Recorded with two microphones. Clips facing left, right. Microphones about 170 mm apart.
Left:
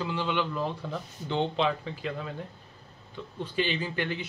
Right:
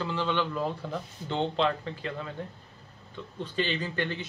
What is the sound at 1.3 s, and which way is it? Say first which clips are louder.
Speech: even; 10° left (ahead or behind).